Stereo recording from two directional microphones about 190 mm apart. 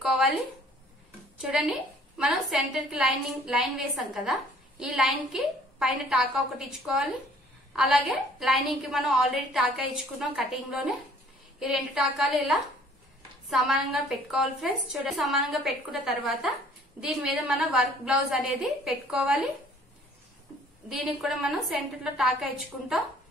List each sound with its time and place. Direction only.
1.4 s a woman's voice: 5° right (ahead or behind)
20.9 s a woman's voice: centre (ahead or behind)